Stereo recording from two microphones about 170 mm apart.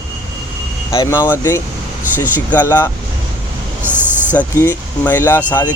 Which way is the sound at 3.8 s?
10° right (ahead or behind).